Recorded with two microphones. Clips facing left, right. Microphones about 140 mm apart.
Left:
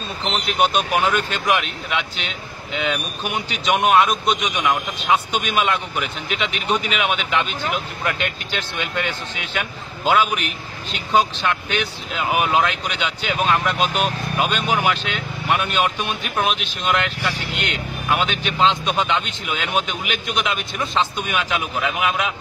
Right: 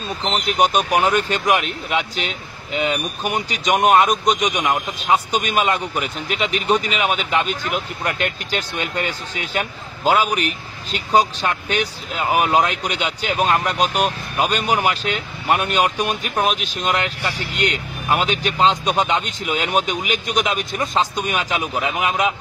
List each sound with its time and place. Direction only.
0.2 s a man's voice: 40° right (ahead or behind)
2.2 s speech: 5° right (ahead or behind)
3.3 s a man's voice: 45° right (ahead or behind)